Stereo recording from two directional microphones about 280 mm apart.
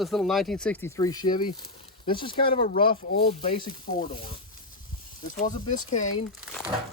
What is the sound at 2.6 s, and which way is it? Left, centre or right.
Speech, left.